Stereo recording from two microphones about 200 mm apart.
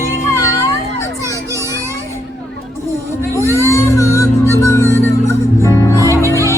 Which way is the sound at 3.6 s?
15° left (ahead or behind).